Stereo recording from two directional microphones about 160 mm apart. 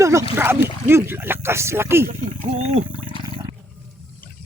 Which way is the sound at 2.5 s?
45° right (ahead or behind).